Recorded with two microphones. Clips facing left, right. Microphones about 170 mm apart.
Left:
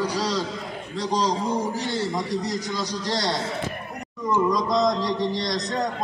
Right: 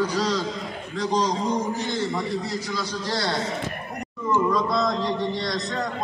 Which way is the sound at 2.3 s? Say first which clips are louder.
Left 1 dB; 40° left (ahead or behind).